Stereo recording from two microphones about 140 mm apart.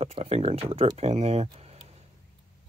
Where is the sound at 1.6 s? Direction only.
45° right (ahead or behind).